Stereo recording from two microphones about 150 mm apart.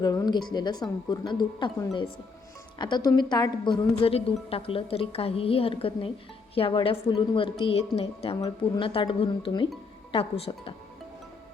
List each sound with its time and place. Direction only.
0.0 s a woman's voice: 25° left (ahead or behind)